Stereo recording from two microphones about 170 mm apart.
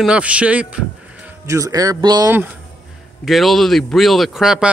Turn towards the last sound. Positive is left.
turn(degrees=-5)  # may be behind; listen again after turning